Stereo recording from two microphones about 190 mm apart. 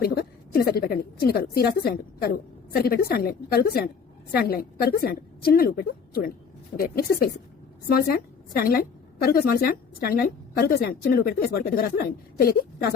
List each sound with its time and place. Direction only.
0.0 s a woman's voice: 55° left (ahead or behind)
8.5 s a woman's voice: 50° left (ahead or behind)